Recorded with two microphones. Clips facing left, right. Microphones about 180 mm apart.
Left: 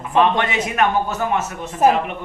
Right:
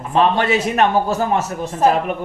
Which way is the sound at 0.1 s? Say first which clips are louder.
Right 2 dB; 35° right (ahead or behind).